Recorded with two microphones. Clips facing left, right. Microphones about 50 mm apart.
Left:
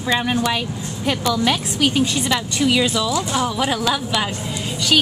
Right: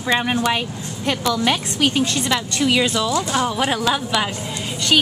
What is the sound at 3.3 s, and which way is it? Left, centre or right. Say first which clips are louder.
Speech: even; centre.